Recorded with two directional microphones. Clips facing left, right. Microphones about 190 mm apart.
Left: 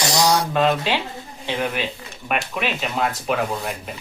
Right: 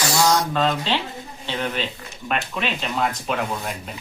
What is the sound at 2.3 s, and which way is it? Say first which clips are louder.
Speech: left 1 dB; 10° left (ahead or behind).